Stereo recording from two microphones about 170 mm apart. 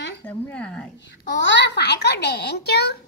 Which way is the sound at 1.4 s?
90° left.